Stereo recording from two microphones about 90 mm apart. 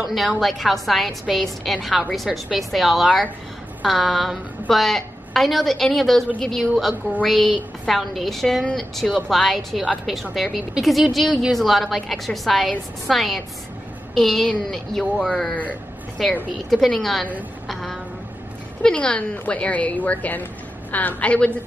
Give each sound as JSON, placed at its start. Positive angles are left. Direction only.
{"t": 0.0, "sound": "a woman's voice", "side_deg": 0}